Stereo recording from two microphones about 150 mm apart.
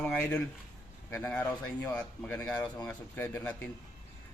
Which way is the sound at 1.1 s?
15° left (ahead or behind).